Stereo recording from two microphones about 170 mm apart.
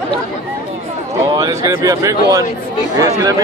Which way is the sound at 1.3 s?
20° right (ahead or behind).